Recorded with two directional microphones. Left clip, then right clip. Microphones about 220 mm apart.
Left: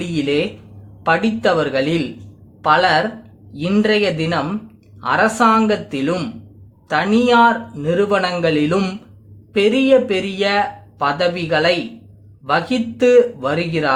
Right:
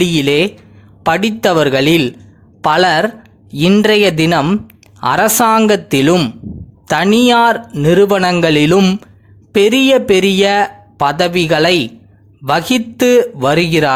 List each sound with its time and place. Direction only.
0.0 s speech: 45° right (ahead or behind)